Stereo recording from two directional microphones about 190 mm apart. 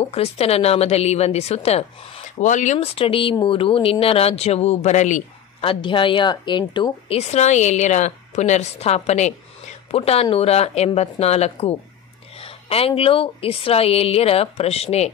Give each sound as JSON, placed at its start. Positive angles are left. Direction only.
{"t": 0.0, "sound": "a woman's voice", "side_deg": 30}